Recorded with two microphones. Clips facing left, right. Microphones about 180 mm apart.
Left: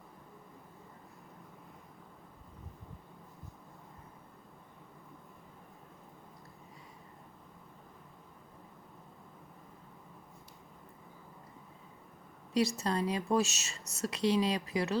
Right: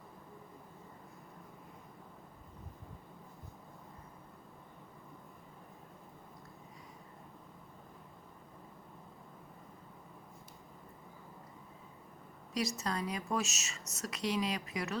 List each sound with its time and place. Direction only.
12.5 s a woman's voice: 30° left (ahead or behind)